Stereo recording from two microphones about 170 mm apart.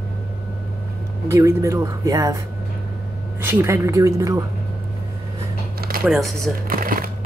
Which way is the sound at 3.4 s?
15° right (ahead or behind).